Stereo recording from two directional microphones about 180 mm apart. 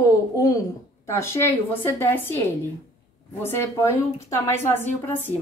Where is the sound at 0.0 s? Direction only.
20° left (ahead or behind).